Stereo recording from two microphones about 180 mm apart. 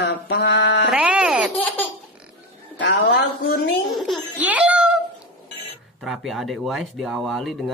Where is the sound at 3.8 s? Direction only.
Centre (ahead or behind).